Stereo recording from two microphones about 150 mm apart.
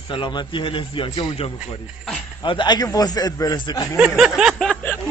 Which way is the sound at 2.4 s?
30° left (ahead or behind).